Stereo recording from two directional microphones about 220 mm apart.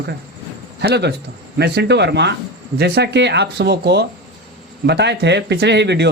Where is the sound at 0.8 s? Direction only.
50° right (ahead or behind).